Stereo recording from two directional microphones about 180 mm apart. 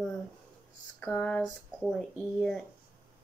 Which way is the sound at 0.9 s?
10° left (ahead or behind).